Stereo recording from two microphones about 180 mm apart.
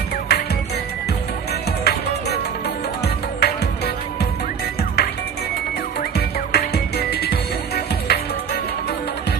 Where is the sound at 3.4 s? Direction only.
65° left (ahead or behind).